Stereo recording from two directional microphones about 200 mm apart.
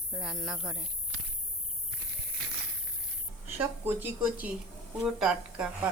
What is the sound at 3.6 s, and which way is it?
A woman's voice, 10° right (ahead or behind).